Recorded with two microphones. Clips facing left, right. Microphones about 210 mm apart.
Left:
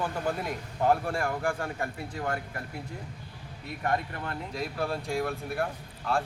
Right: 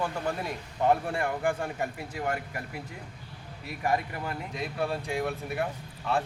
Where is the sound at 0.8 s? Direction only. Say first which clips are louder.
Even; centre (ahead or behind).